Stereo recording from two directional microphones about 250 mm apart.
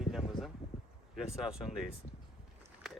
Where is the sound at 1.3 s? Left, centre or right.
Centre.